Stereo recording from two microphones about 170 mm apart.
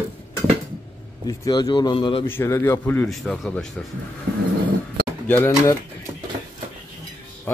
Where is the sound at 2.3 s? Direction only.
15° left (ahead or behind).